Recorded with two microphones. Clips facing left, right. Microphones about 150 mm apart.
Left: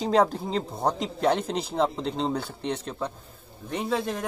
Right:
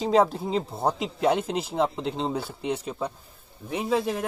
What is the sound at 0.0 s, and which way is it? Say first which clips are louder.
Speech: right 1 dB; centre (ahead or behind).